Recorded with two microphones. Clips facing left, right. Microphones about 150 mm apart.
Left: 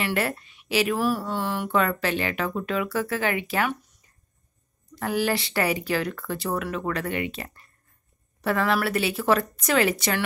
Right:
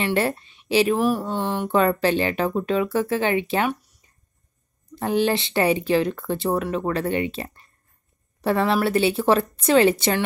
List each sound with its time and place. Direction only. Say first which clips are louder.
0.0 s speech: right 4 dB; 25° right (ahead or behind)
1.0 s speech: right 3 dB; 15° right (ahead or behind)
4.9 s speech: right 4 dB; 25° right (ahead or behind)